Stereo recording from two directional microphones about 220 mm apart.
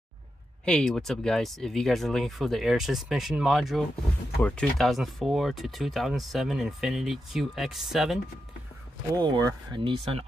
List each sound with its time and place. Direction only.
0.7 s speech: 5° left (ahead or behind)
9.1 s speech: 20° right (ahead or behind)